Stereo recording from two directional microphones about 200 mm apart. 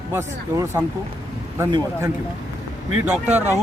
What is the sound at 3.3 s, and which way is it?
Speech, 10° right (ahead or behind).